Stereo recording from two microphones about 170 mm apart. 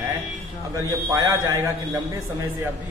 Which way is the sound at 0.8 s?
20° right (ahead or behind).